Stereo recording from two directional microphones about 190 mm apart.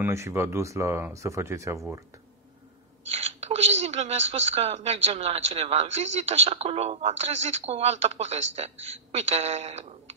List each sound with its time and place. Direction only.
0.0 s speech: 15° right (ahead or behind)
3.1 s a woman's voice: 35° right (ahead or behind)